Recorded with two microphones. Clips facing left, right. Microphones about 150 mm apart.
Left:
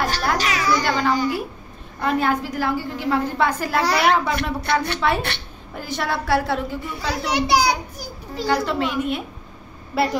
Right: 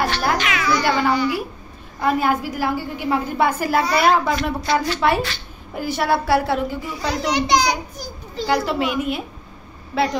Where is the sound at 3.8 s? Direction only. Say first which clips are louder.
Right 1 dB; 70° left (ahead or behind).